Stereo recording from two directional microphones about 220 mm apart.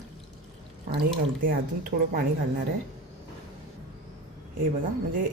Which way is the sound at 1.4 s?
40° right (ahead or behind).